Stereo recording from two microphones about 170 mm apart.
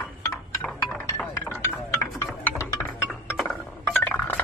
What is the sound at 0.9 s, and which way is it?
Chink, 10° left (ahead or behind).